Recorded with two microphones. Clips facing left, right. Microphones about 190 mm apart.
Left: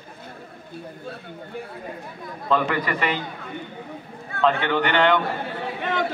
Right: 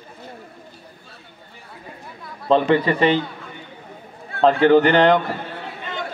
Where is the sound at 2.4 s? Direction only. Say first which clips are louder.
Right 6 dB; 30° right (ahead or behind).